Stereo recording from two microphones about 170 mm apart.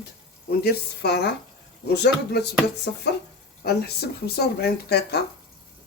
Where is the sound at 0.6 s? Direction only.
75° left (ahead or behind).